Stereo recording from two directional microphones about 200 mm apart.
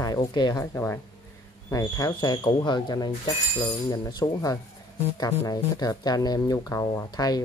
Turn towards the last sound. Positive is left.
turn(degrees=20)  # may be behind; listen again after turning